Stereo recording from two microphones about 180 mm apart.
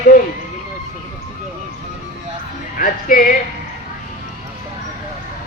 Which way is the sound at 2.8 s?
50° left (ahead or behind).